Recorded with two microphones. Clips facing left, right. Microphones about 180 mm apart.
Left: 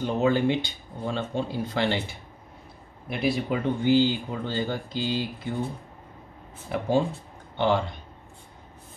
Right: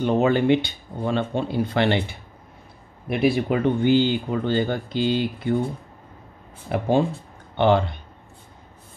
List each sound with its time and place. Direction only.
0.0 s speech: 65° right (ahead or behind)
6.7 s speech: 60° right (ahead or behind)